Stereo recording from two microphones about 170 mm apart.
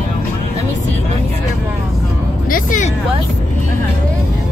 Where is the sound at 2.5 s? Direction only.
50° left (ahead or behind).